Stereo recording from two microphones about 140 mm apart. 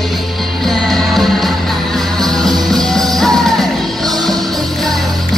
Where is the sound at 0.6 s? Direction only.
Centre (ahead or behind).